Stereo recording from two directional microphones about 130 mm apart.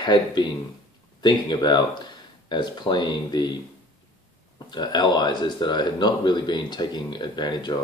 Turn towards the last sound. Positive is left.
turn(degrees=35)  # may be behind; listen again after turning